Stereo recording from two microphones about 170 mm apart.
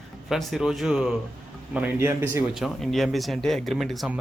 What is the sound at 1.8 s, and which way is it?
Speech, 15° right (ahead or behind).